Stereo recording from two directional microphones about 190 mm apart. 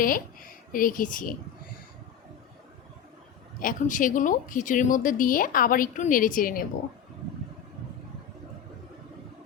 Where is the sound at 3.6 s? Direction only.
45° left (ahead or behind).